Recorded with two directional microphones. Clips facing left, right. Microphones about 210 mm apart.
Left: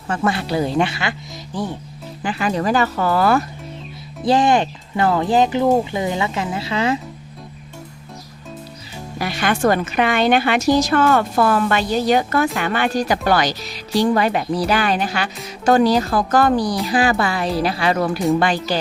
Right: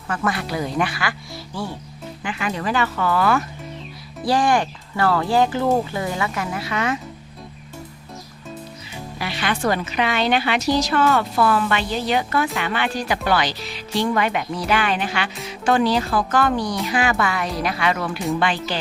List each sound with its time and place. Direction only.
0.1 s speech: 30° left (ahead or behind)
2.2 s speech: 35° left (ahead or behind)
4.2 s speech: 20° left (ahead or behind)
9.1 s a woman's voice: 45° left (ahead or behind)